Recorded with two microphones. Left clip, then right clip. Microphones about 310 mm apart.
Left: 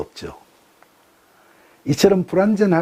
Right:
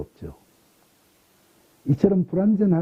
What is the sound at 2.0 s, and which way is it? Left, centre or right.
Speech, centre.